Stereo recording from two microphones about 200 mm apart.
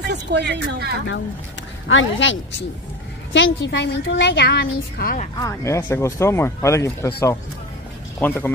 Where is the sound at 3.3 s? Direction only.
65° left (ahead or behind); by 5.3 s 45° left (ahead or behind).